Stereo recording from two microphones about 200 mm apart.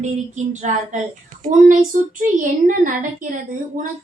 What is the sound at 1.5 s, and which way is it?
Speech, 40° right (ahead or behind).